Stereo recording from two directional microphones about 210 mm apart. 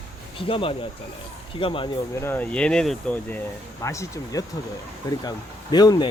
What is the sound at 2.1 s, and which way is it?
Speech, 10° left (ahead or behind).